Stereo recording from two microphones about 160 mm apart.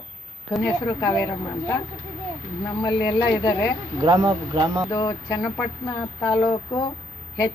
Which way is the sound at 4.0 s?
30° right (ahead or behind).